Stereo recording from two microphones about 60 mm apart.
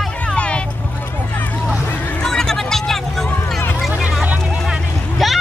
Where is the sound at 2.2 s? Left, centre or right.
Centre.